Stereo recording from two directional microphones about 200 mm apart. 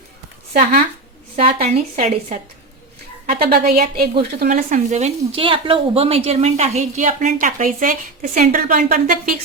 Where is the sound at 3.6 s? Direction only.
50° right (ahead or behind).